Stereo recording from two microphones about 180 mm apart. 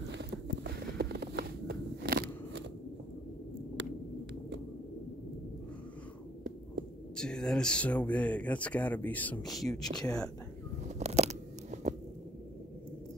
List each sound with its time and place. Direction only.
0.1 s a sound: 75° right (ahead or behind)
7.2 s speech: 5° left (ahead or behind)
9.8 s speech: 20° left (ahead or behind)
11.0 s crunch: 40° right (ahead or behind)